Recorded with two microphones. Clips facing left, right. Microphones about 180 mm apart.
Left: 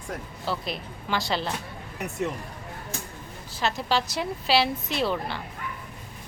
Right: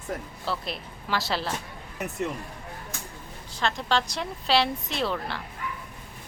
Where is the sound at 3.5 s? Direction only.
5° left (ahead or behind).